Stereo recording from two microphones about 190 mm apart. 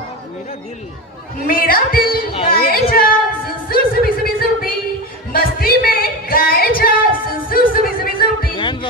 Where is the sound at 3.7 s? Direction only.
50° left (ahead or behind).